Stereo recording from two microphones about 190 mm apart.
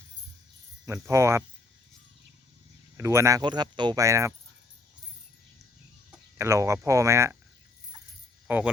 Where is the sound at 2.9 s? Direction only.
15° right (ahead or behind).